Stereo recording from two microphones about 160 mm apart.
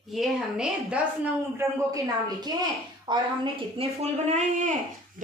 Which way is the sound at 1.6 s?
20° right (ahead or behind).